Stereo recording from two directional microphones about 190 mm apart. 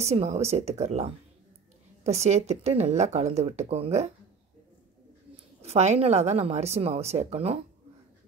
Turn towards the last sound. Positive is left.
turn(degrees=-30)  # may be behind; listen again after turning